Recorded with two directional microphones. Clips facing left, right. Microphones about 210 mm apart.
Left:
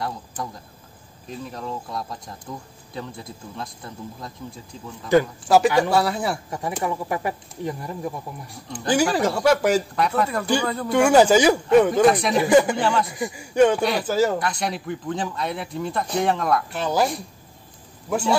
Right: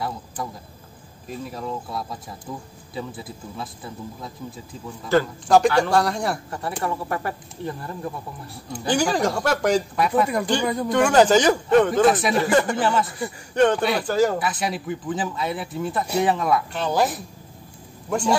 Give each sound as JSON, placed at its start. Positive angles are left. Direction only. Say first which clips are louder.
{"t": 1.4, "sound": "speech", "louder": "right 1 dB", "side_deg": -5}
{"t": 5.1, "sound": "speech", "louder": "left 1 dB", "side_deg": 15}
{"t": 10.2, "sound": "speech", "louder": "right 1 dB", "side_deg": -15}
{"t": 10.9, "sound": "speech", "louder": "left 2 dB", "side_deg": 10}
{"t": 11.9, "sound": "speech", "louder": "left 1 dB", "side_deg": 0}
{"t": 12.4, "sound": "speech", "louder": "left 3 dB", "side_deg": 10}
{"t": 12.7, "sound": "speech", "louder": "even", "side_deg": -5}
{"t": 13.1, "sound": "speech", "louder": "left 2 dB", "side_deg": 10}